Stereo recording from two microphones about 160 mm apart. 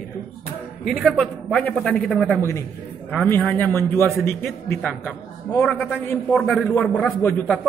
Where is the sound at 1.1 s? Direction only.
5° left (ahead or behind).